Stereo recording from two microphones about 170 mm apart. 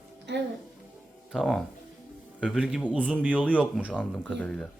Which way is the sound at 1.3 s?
Centre (ahead or behind).